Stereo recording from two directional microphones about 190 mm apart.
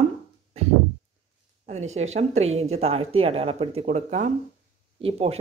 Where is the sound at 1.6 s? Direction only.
35° right (ahead or behind).